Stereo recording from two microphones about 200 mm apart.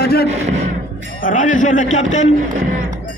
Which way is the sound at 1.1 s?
40° left (ahead or behind).